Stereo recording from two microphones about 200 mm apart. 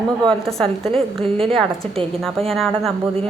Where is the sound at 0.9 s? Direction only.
30° right (ahead or behind).